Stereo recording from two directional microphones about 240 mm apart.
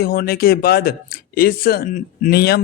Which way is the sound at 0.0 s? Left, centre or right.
Left.